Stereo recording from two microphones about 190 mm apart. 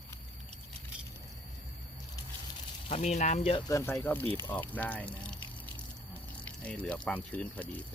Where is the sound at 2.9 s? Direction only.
35° left (ahead or behind); by 4.3 s 10° left (ahead or behind).